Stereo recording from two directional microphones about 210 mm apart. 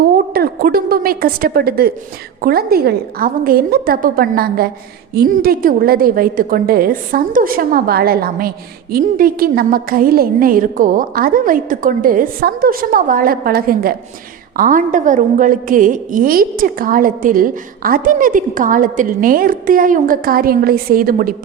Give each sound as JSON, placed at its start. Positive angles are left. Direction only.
{"t": 0.3, "sound": "a woman's voice", "side_deg": -45}